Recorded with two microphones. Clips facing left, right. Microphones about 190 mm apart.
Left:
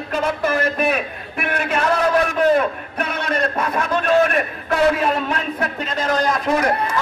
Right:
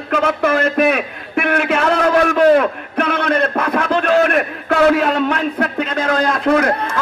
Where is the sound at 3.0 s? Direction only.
60° right (ahead or behind).